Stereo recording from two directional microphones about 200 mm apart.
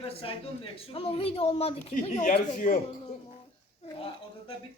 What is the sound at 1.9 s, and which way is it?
Speech, 40° left (ahead or behind).